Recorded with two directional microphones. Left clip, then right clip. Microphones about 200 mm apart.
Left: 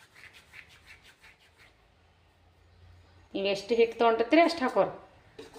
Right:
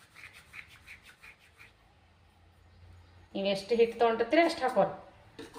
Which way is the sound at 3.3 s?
55° left (ahead or behind).